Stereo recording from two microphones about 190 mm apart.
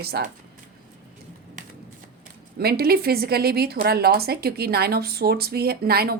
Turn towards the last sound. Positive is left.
turn(degrees=-55)  # may be behind; listen again after turning